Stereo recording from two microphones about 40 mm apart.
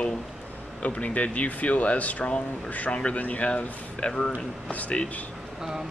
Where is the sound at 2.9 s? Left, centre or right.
Left.